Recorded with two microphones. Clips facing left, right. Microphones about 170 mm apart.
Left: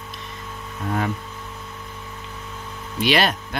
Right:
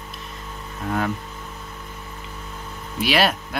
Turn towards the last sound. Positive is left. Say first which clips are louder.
# even
turn(degrees=-5)  # may be behind; listen again after turning